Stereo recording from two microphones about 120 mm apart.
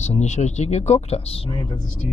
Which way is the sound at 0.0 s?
70° left (ahead or behind).